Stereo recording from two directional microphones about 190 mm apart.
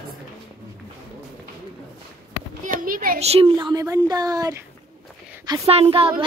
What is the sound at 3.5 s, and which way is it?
Speech, 15° right (ahead or behind).